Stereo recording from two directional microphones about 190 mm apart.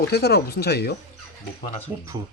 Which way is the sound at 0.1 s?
55° left (ahead or behind).